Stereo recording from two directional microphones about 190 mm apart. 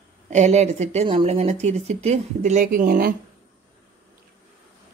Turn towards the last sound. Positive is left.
turn(degrees=-45)  # may be behind; listen again after turning